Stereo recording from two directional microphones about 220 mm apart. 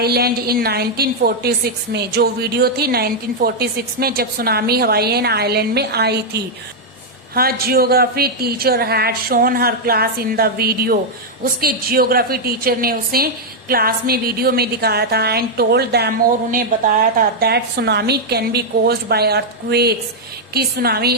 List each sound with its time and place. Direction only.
0.0 s a woman's voice: 45° right (ahead or behind)